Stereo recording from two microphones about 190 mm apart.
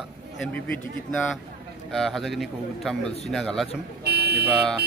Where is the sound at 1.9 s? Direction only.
Centre (ahead or behind).